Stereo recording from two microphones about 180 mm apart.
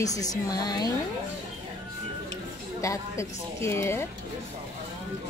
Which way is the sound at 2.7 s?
15° left (ahead or behind).